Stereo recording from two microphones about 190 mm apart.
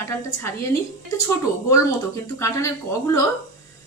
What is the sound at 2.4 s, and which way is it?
Speech, 15° left (ahead or behind).